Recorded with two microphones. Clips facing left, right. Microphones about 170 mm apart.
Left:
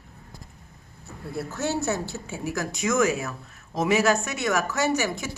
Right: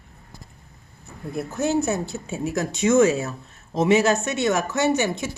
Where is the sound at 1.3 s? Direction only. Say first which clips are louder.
Right 5 dB; 15° right (ahead or behind).